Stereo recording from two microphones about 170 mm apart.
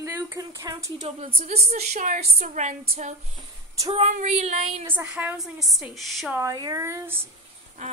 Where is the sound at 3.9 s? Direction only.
40° right (ahead or behind).